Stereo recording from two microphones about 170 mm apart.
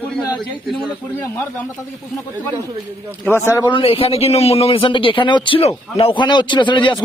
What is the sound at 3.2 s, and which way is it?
A man's voice, 15° left (ahead or behind).